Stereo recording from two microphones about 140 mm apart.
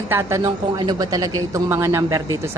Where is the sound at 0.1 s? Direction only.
20° right (ahead or behind).